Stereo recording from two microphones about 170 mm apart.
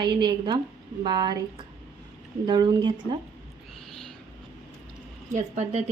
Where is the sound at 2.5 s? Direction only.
25° right (ahead or behind).